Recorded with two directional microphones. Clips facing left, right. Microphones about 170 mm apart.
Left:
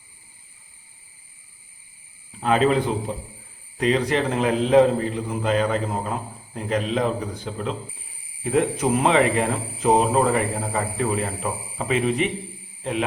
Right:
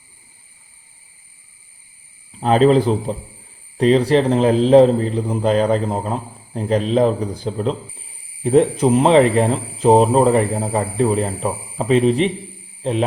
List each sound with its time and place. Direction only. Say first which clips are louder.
2.4 s a man's voice: right 6 dB; 30° right (ahead or behind)